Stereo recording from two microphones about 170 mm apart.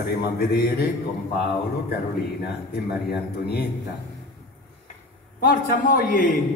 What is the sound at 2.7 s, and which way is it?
Speech, 70° left (ahead or behind).